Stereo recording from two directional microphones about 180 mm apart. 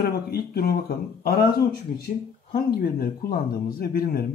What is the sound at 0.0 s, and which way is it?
Speech, 60° left (ahead or behind).